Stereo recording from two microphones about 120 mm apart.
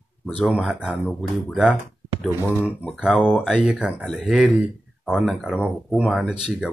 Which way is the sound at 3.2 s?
5° right (ahead or behind).